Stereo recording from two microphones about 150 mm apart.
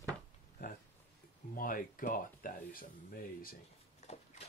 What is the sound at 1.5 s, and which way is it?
Speech, 65° left (ahead or behind).